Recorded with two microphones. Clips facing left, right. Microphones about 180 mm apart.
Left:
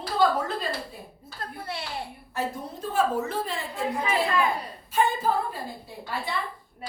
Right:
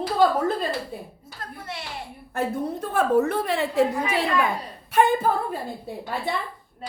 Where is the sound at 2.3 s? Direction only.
55° right (ahead or behind); by 4.2 s 75° right (ahead or behind).